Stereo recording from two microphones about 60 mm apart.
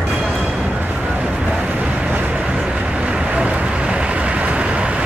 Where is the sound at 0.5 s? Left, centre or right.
Right.